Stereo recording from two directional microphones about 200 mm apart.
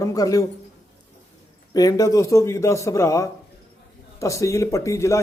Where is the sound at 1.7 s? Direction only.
15° left (ahead or behind).